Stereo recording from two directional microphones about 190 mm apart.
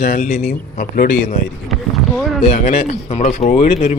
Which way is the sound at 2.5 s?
35° left (ahead or behind).